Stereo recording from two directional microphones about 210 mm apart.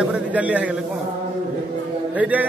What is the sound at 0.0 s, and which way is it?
Speech, 5° right (ahead or behind).